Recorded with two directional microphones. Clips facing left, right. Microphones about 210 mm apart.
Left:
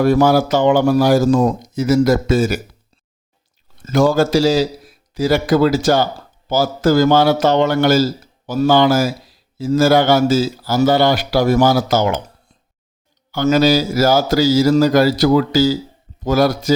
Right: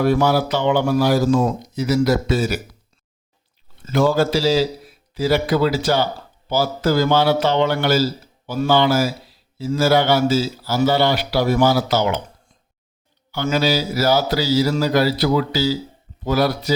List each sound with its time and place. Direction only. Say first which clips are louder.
0.0 s a man's voice: left 4 dB; 45° left (ahead or behind)
3.8 s a man's voice: left 3 dB; 45° left (ahead or behind)
13.3 s a man's voice: left 6 dB; 40° left (ahead or behind)